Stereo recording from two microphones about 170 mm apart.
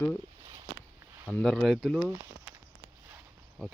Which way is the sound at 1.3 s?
5° left (ahead or behind).